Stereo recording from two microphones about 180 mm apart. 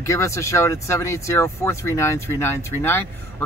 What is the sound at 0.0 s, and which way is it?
Speech, 15° left (ahead or behind).